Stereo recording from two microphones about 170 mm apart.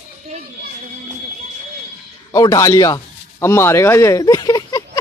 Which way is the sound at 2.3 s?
20° left (ahead or behind).